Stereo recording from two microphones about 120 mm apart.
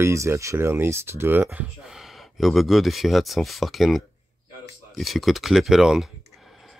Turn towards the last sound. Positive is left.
turn(degrees=-5)  # may be behind; listen again after turning